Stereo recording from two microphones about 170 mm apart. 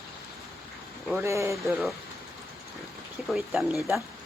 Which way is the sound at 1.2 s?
15° right (ahead or behind).